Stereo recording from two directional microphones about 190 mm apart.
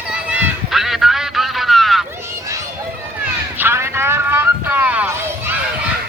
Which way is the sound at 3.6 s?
10° right (ahead or behind).